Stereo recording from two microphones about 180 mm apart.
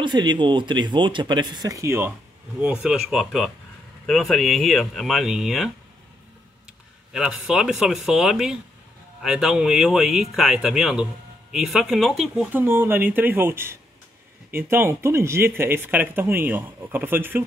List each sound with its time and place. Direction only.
0.0 s speech: 25° right (ahead or behind); by 5.7 s centre (ahead or behind)
7.1 s speech: 5° right (ahead or behind)
12.6 s speech: 10° right (ahead or behind)